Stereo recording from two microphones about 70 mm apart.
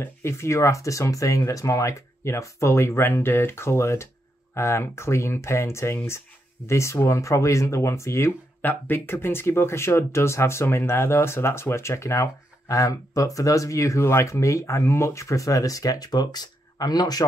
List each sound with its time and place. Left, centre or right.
0.0 s speech: left
8.6 s speech: left